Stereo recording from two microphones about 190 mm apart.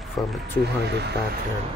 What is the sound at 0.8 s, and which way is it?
Speech, 60° right (ahead or behind).